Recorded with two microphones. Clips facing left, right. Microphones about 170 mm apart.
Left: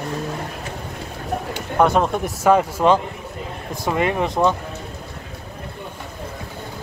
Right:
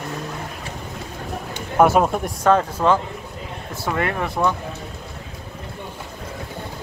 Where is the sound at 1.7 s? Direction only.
5° right (ahead or behind).